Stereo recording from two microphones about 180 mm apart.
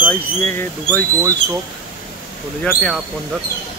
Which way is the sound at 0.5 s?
10° left (ahead or behind).